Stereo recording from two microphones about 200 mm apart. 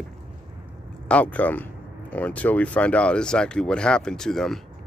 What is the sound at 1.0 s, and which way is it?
Speech, 5° left (ahead or behind).